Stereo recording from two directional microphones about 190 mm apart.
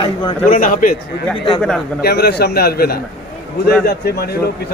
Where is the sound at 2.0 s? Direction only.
55° left (ahead or behind).